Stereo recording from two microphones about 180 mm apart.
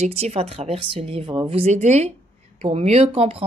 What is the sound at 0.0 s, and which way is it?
Speech, 35° right (ahead or behind).